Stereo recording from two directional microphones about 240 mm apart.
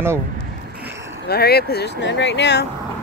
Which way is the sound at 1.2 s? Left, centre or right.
Left.